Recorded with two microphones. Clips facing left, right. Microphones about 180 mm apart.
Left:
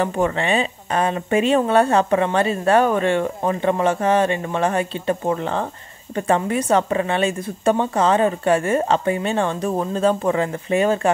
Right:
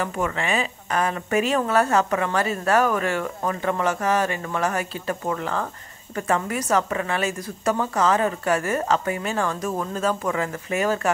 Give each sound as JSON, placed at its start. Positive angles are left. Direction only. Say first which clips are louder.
{"t": 0.0, "sound": "speech", "louder": "left 5 dB", "side_deg": 30}